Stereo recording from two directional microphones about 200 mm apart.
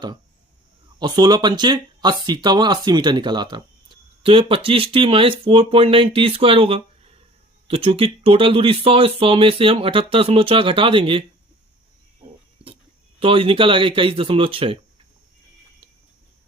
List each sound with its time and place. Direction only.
0.9 s speech: 20° right (ahead or behind)
12.6 s a sound: 30° right (ahead or behind)
13.1 s speech: 25° right (ahead or behind)